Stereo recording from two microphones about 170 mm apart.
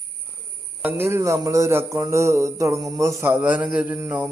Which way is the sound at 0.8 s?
10° right (ahead or behind).